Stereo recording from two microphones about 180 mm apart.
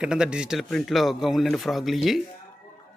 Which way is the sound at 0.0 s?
5° right (ahead or behind).